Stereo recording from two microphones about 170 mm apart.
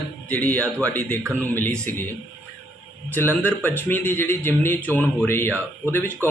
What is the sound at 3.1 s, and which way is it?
Speech, 10° left (ahead or behind).